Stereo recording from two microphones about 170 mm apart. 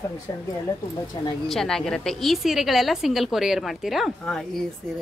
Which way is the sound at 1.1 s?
25° left (ahead or behind).